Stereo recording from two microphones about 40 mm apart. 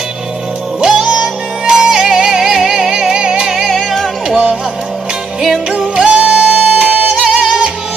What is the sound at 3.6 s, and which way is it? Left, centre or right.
Music, centre.